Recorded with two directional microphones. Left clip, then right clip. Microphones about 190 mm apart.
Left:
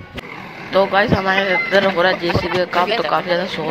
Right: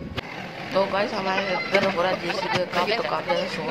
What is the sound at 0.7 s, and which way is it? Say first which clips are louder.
Speech: left 8 dB; 15° left (ahead or behind).